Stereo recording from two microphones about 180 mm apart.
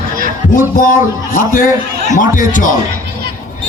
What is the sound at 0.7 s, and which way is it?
A man's voice, 50° left (ahead or behind).